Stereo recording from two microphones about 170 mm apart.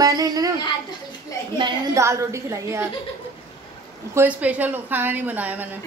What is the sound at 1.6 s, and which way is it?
A woman's voice, 15° right (ahead or behind).